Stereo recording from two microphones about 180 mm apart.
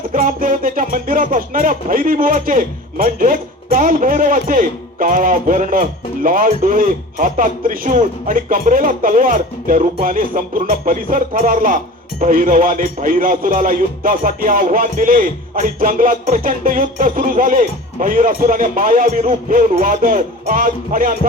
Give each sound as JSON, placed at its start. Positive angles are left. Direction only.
{"t": 0.1, "sound": "speech", "side_deg": -50}